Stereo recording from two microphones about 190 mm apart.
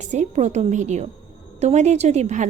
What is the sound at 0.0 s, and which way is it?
A woman's voice, 40° right (ahead or behind).